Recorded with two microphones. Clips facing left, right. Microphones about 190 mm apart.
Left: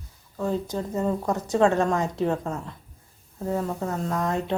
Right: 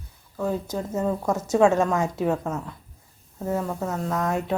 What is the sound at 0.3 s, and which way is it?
Speech, 5° right (ahead or behind).